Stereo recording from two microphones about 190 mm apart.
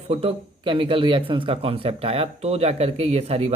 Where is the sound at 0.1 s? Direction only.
30° right (ahead or behind).